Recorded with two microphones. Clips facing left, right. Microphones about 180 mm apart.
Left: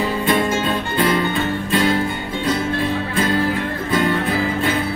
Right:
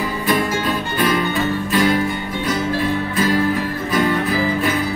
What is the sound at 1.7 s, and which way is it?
Music, 25° left (ahead or behind).